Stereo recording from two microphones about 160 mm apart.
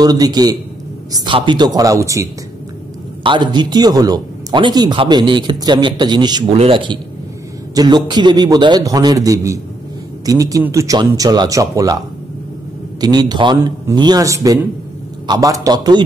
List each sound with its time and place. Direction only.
0.0 s a man's voice: 25° right (ahead or behind)
3.3 s a man's voice: 30° right (ahead or behind)
13.0 s a man's voice: 25° right (ahead or behind)